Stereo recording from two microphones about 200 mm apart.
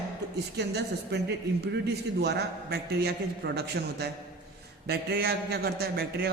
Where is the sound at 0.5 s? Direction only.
55° right (ahead or behind).